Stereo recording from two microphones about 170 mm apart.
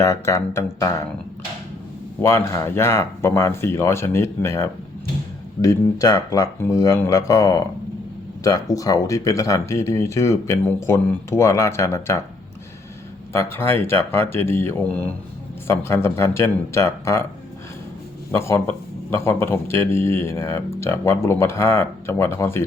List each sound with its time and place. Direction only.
0.0 s speech: 15° left (ahead or behind)
2.2 s speech: 15° left (ahead or behind)
8.7 s speech: 20° left (ahead or behind)
13.3 s speech: 15° left (ahead or behind)
18.3 s speech: 15° left (ahead or behind)